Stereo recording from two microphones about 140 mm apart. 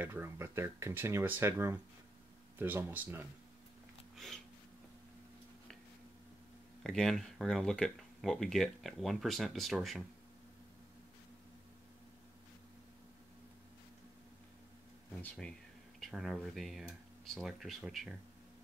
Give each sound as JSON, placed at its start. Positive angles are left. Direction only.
{"t": 0.0, "sound": "speech", "side_deg": -15}
{"t": 4.1, "sound": "a sound", "side_deg": 0}
{"t": 6.8, "sound": "speech", "side_deg": 5}
{"t": 15.2, "sound": "speech", "side_deg": 5}